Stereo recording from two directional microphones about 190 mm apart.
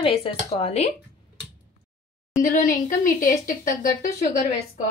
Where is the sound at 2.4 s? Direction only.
45° left (ahead or behind).